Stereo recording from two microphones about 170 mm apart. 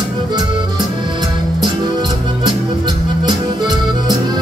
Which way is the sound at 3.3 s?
25° right (ahead or behind).